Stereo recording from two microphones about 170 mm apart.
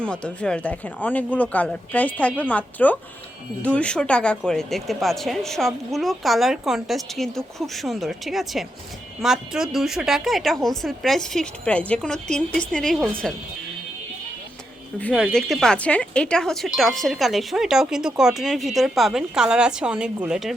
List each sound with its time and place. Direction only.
0.0 s speech: 5° left (ahead or behind)
14.9 s speech: 5° left (ahead or behind)